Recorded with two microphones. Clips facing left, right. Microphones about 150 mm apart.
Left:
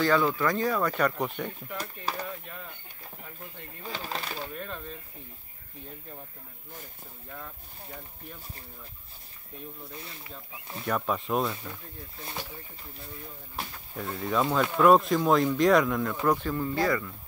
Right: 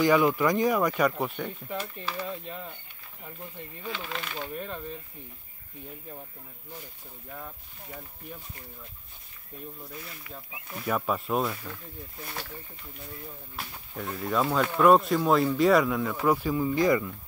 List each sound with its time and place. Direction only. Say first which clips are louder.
0.0 s speech: right 3 dB; 15° right (ahead or behind)
2.1 s speech: left 2 dB; 40° left (ahead or behind)
2.4 s speech: right 4 dB; 20° right (ahead or behind)
3.8 s speech: even; 40° left (ahead or behind)
4.6 s speech: right 2 dB; 15° right (ahead or behind)
9.9 s speech: right 1 dB; 25° left (ahead or behind)
10.9 s speech: right 1 dB; 5° right (ahead or behind)
12.3 s speech: left 2 dB; 15° left (ahead or behind)
13.9 s speech: even; centre (ahead or behind); by 17.1 s 20° right (ahead or behind)